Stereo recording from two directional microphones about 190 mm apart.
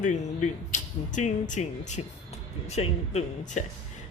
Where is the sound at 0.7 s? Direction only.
40° left (ahead or behind).